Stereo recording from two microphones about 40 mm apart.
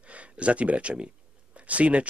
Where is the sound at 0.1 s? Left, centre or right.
Right.